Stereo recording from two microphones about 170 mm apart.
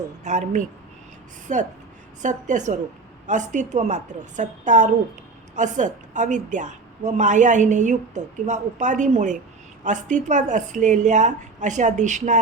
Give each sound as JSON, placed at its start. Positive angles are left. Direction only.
{"t": 0.3, "sound": "a woman's voice", "side_deg": -45}